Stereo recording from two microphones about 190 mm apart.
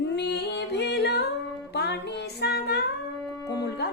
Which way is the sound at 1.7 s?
60° left (ahead or behind).